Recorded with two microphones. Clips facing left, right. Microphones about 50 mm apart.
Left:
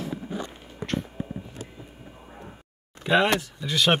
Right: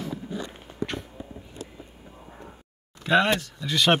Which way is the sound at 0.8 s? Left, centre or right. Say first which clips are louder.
Even; left.